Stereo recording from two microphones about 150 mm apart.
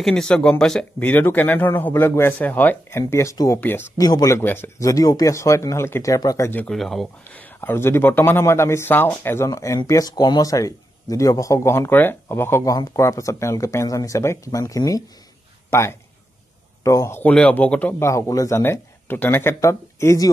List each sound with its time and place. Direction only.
0.0 s speech: 5° left (ahead or behind)